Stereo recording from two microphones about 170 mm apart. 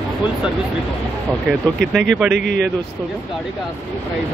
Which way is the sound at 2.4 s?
90° right.